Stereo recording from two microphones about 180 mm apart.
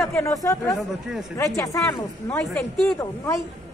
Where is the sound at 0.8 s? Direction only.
5° right (ahead or behind).